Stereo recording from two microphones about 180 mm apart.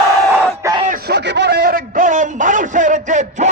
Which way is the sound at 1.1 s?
70° right (ahead or behind).